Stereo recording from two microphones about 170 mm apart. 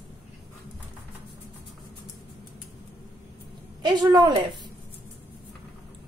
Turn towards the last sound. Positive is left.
turn(degrees=-25)  # may be behind; listen again after turning